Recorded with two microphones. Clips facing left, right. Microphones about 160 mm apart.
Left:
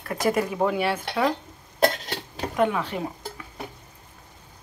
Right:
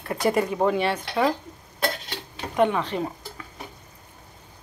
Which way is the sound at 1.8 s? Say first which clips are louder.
Left 6 dB; 45° left (ahead or behind).